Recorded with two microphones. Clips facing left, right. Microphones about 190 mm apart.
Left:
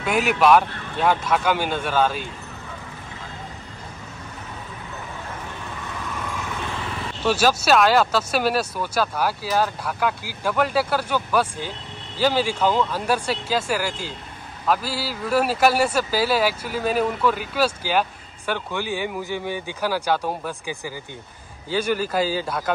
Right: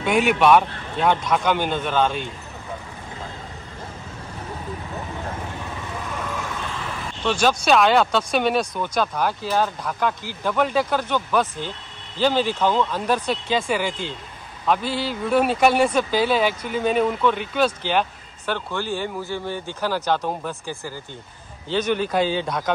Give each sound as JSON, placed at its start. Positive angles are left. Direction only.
{"t": 0.0, "sound": "speech", "side_deg": 0}
{"t": 7.2, "sound": "speech", "side_deg": 5}